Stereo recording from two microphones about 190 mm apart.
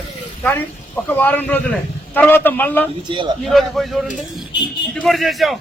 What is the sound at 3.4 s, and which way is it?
Speech, centre (ahead or behind).